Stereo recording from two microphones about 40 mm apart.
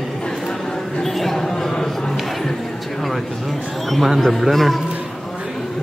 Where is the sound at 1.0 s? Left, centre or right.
Centre.